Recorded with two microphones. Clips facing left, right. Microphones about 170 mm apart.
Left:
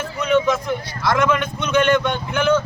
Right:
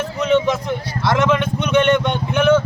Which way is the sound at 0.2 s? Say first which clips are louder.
Right 1 dB; 20° right (ahead or behind).